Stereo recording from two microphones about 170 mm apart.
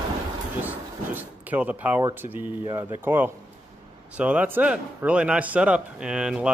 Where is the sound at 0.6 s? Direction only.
10° right (ahead or behind).